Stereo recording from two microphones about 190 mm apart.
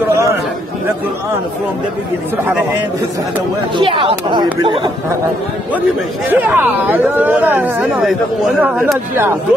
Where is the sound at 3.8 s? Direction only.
25° right (ahead or behind).